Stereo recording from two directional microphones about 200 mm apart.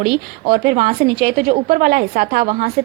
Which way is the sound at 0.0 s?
50° right (ahead or behind).